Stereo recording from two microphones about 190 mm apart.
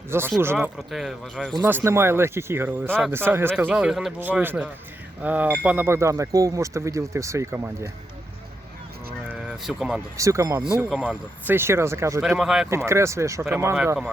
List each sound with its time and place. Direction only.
0.1 s speech: 10° right (ahead or behind)
0.6 s speech: centre (ahead or behind)
1.6 s speech: 10° right (ahead or behind)
9.3 s speech: 5° right (ahead or behind)
10.2 s speech: 15° right (ahead or behind)
10.8 s speech: centre (ahead or behind)
12.2 s speech: 5° right (ahead or behind)
12.7 s speech: 15° right (ahead or behind)